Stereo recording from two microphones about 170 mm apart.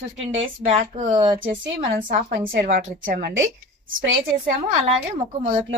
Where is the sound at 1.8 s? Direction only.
50° right (ahead or behind).